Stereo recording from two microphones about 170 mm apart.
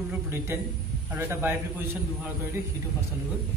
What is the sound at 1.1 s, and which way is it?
Speech, 10° right (ahead or behind).